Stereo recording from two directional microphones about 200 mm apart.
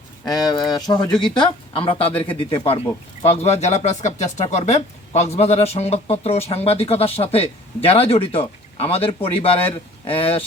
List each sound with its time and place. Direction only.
0.3 s speech: 20° left (ahead or behind)